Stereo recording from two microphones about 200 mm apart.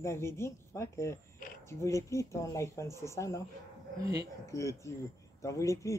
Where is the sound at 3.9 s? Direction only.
15° right (ahead or behind).